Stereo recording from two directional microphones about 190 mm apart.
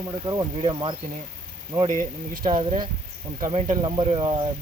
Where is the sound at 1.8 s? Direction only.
40° right (ahead or behind).